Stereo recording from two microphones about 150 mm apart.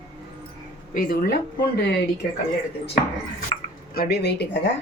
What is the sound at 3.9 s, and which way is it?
Speech, 85° left.